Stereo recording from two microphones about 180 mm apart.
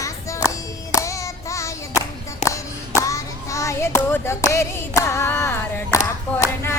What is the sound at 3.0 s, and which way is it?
Clapping, 15° left (ahead or behind).